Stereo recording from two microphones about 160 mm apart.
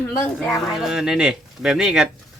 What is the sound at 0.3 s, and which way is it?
Speech, centre (ahead or behind).